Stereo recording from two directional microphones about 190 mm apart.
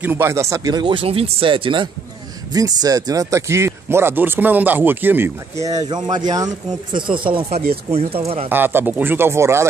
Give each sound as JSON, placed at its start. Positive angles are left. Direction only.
{"t": 0.0, "sound": "speech", "side_deg": -10}
{"t": 8.5, "sound": "speech", "side_deg": -10}